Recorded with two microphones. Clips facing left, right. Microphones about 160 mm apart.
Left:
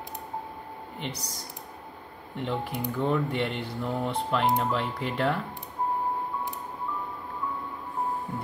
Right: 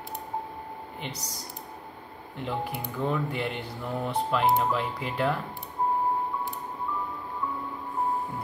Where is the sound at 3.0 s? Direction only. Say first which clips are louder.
Left 2 dB; centre (ahead or behind).